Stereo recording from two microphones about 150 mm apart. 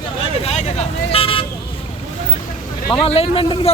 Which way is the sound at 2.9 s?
40° left (ahead or behind).